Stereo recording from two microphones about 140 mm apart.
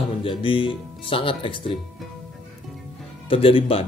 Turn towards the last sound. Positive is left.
turn(degrees=45)  # may be behind; listen again after turning